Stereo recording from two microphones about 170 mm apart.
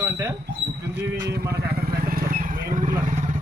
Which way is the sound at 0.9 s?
70° right (ahead or behind).